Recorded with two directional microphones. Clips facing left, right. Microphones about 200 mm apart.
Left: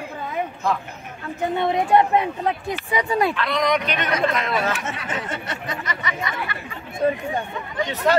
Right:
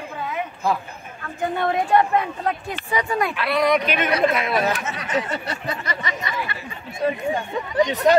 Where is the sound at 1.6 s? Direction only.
20° left (ahead or behind).